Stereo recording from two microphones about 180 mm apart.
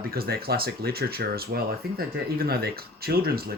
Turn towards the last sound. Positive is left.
turn(degrees=-60)  # may be behind; listen again after turning